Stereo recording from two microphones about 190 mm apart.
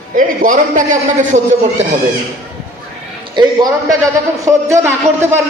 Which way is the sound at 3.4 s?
20° right (ahead or behind).